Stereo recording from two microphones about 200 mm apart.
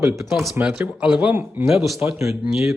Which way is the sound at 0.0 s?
15° right (ahead or behind).